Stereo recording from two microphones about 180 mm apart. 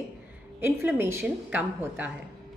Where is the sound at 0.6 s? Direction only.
10° right (ahead or behind).